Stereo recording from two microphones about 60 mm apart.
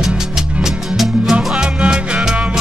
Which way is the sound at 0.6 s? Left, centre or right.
Centre.